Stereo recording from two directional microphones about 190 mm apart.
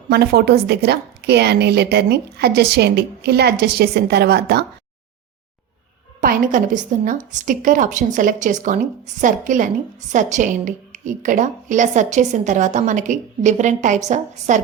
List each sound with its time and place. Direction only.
0.1 s a woman's voice: 60° right (ahead or behind)
6.2 s a woman's voice: 45° right (ahead or behind)